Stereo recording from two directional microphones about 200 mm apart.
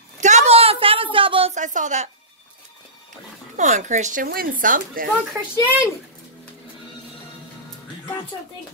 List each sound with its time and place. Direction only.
0.2 s a sound: 35° right (ahead or behind)
1.5 s a woman's voice: 40° right (ahead or behind)
3.5 s speech: 35° right (ahead or behind)
5.3 s speech: 10° right (ahead or behind)